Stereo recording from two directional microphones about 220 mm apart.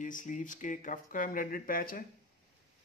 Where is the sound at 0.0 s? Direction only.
35° left (ahead or behind).